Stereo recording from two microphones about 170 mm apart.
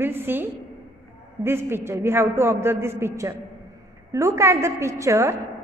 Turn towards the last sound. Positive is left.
turn(degrees=-15)  # may be behind; listen again after turning